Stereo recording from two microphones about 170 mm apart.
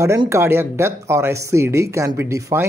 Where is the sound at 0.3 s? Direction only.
15° right (ahead or behind).